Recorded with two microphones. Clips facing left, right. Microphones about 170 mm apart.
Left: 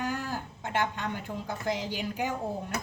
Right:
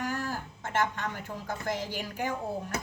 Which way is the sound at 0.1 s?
15° left (ahead or behind).